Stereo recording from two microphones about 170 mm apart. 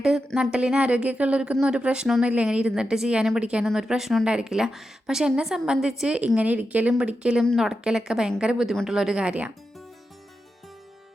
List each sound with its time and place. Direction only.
0.0 s a woman's voice: 5° right (ahead or behind)